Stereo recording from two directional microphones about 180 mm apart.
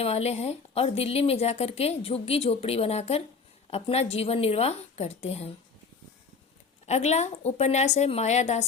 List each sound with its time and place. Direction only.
0.0 s a woman's voice: 35° left (ahead or behind)
6.8 s a woman's voice: 40° left (ahead or behind)